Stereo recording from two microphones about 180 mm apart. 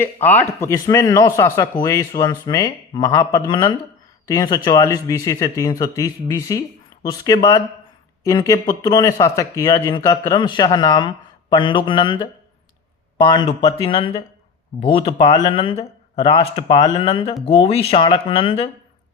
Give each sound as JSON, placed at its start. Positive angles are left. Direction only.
{"t": 0.0, "sound": "a man's voice", "side_deg": 10}